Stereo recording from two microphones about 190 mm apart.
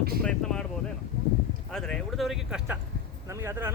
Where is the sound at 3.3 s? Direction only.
15° right (ahead or behind).